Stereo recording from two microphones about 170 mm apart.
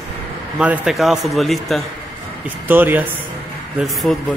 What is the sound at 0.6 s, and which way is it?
Speech, 5° right (ahead or behind).